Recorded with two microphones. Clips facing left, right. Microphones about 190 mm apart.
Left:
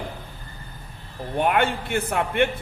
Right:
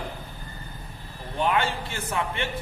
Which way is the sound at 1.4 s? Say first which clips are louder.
Left 3 dB; 60° left (ahead or behind).